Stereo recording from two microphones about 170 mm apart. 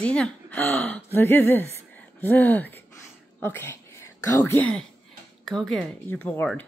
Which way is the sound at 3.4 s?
15° left (ahead or behind).